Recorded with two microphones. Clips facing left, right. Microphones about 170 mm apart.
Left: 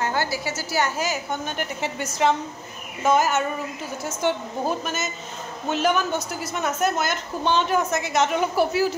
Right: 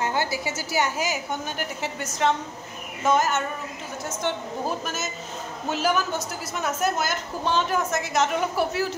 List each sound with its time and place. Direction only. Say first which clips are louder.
0.0 s a woman's voice: left 1 dB; 20° right (ahead or behind); by 8.8 s centre (ahead or behind)